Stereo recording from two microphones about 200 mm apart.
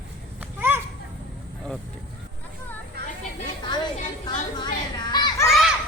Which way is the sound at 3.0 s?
55° right (ahead or behind).